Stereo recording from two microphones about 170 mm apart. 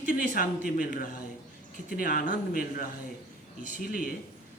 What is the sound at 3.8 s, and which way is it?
Speech, 55° left (ahead or behind).